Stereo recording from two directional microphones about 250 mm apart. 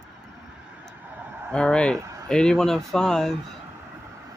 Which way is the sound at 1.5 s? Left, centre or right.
Centre.